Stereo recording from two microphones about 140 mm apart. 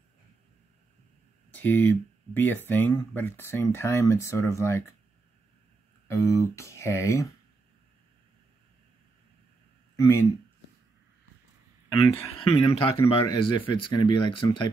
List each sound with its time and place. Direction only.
1.5 s speech: 10° left (ahead or behind)
6.0 s speech: 25° left (ahead or behind)
9.9 s speech: 25° left (ahead or behind)
12.3 s speech: 40° left (ahead or behind)